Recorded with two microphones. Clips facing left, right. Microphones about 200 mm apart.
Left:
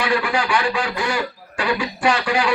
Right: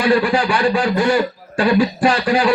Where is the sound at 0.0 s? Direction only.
35° right (ahead or behind).